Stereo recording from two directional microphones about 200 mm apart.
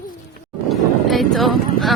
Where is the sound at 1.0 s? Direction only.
Centre (ahead or behind).